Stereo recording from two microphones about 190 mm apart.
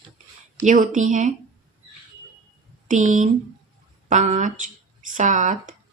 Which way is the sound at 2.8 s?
40° right (ahead or behind).